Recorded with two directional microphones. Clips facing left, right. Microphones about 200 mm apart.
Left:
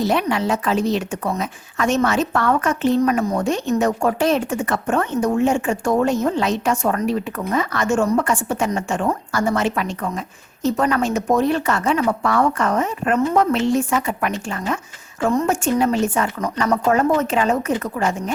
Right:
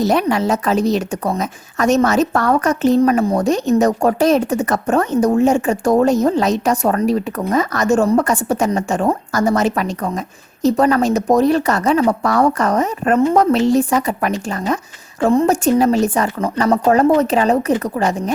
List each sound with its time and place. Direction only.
0.0 s a woman's voice: 40° right (ahead or behind)